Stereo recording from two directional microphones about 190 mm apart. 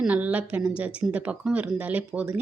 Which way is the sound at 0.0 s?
10° right (ahead or behind).